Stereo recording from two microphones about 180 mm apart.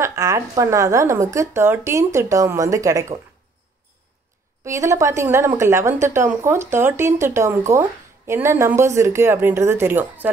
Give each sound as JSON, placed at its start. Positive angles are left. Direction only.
{"t": 0.0, "sound": "speech", "side_deg": -20}
{"t": 4.6, "sound": "speech", "side_deg": -15}